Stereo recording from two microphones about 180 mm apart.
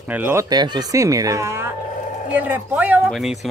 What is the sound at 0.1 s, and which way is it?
Speech, 10° right (ahead or behind).